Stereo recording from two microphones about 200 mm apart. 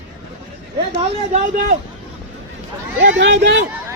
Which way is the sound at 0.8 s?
30° right (ahead or behind).